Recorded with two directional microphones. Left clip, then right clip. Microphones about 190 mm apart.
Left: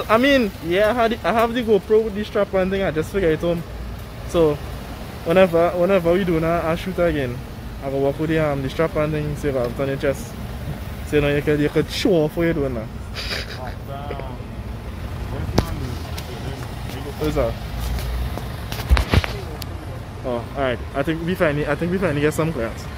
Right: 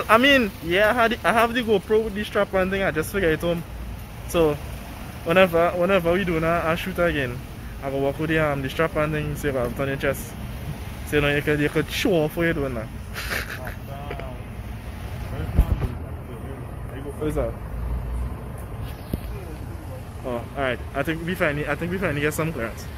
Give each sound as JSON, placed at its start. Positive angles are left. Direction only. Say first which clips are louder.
{"t": 0.0, "sound": "speech", "louder": "even", "side_deg": 5}
{"t": 20.2, "sound": "speech", "louder": "left 3 dB", "side_deg": 10}